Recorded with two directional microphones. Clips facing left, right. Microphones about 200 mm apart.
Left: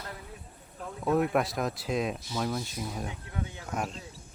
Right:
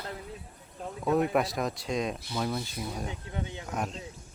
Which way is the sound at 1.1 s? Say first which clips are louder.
Even; centre (ahead or behind).